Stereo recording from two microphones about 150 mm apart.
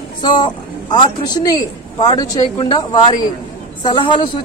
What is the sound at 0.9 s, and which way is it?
A woman's voice, 25° left (ahead or behind).